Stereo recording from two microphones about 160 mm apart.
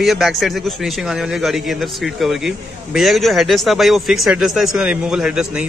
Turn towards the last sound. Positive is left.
turn(degrees=-5)  # may be behind; listen again after turning